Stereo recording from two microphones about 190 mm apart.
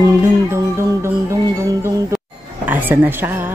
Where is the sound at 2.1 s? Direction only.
10° right (ahead or behind).